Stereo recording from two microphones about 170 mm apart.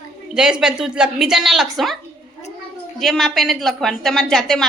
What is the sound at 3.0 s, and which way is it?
A woman's voice, centre (ahead or behind).